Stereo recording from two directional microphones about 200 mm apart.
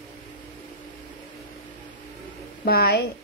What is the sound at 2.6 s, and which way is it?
Speech, 50° left (ahead or behind).